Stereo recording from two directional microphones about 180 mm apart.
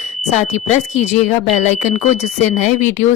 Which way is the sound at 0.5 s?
40° left (ahead or behind).